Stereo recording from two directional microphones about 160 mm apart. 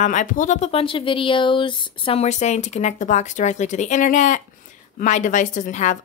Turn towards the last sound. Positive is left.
turn(degrees=50)  # may be behind; listen again after turning